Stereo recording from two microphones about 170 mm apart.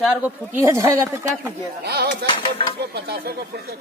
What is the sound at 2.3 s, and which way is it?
Speech, 30° left (ahead or behind).